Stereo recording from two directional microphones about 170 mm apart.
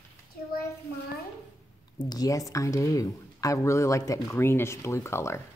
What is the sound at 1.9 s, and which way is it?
Speech, 25° left (ahead or behind).